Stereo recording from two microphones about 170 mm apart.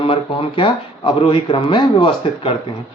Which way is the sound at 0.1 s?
30° left (ahead or behind).